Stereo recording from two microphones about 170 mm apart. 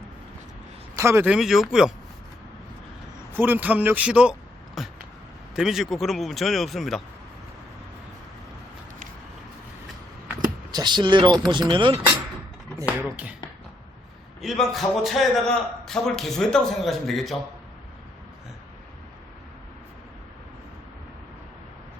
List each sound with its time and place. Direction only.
0.9 s a man's voice: 15° right (ahead or behind)
3.3 s a man's voice: 10° right (ahead or behind)
10.7 s speech: 25° right (ahead or behind)
13.1 s speech: 10° right (ahead or behind)
14.4 s a man's voice: centre (ahead or behind)